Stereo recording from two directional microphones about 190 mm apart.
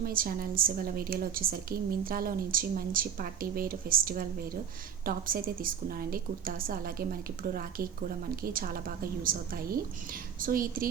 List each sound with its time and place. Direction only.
0.0 s a woman's voice: 50° right (ahead or behind)